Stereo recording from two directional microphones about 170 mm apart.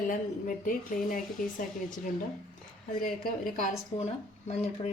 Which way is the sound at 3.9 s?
40° left (ahead or behind).